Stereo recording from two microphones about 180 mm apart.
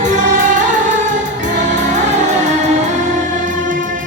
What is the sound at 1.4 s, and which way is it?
Music, 45° right (ahead or behind).